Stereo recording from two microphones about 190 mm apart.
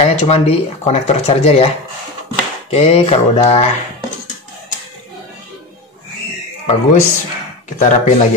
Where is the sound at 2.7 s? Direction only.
35° left (ahead or behind).